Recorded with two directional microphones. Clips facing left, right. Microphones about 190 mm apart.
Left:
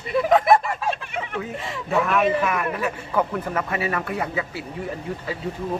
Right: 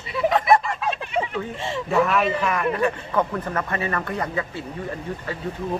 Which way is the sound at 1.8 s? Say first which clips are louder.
Even; centre (ahead or behind).